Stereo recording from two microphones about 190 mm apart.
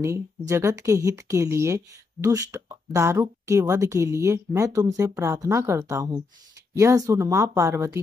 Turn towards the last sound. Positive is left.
turn(degrees=-15)  # may be behind; listen again after turning